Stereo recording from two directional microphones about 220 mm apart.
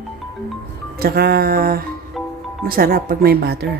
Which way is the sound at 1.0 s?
45° right (ahead or behind).